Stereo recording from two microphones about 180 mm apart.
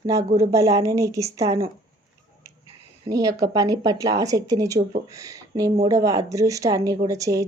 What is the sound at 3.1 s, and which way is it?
A woman's voice, 20° right (ahead or behind).